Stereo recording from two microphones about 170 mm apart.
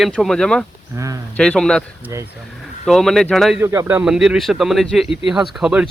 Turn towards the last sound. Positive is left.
turn(degrees=-5)  # may be behind; listen again after turning